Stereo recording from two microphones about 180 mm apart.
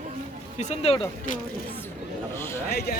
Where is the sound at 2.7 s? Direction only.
60° left (ahead or behind).